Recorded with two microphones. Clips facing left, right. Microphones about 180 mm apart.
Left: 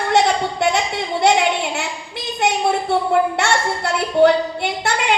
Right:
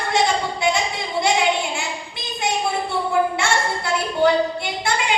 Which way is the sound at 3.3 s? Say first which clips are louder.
Left 2 dB; 70° left (ahead or behind).